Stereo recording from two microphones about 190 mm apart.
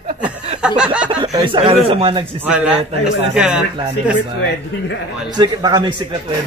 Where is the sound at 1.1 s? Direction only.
25° right (ahead or behind).